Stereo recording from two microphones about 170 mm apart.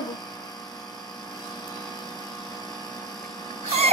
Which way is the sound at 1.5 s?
25° left (ahead or behind).